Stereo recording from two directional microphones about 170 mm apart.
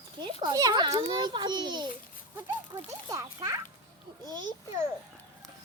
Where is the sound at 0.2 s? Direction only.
25° right (ahead or behind).